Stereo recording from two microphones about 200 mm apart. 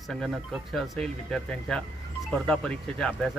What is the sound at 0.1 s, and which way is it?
Speech, centre (ahead or behind).